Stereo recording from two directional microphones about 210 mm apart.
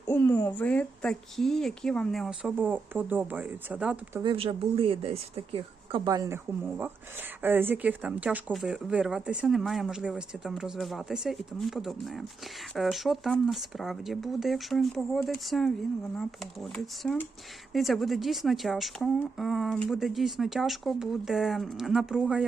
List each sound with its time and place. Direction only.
0.1 s speech: 10° left (ahead or behind); by 4.2 s 5° right (ahead or behind)
4.2 s speech: 25° right (ahead or behind); by 22.4 s 5° right (ahead or behind)